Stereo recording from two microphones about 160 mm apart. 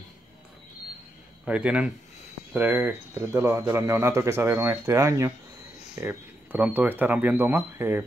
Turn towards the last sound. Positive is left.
turn(degrees=-15)  # may be behind; listen again after turning